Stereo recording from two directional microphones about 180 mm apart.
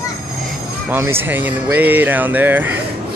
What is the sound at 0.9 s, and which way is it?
Speech, 15° right (ahead or behind).